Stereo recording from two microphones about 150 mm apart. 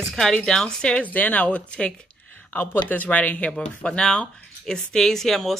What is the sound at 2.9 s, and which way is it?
Speech, 10° left (ahead or behind).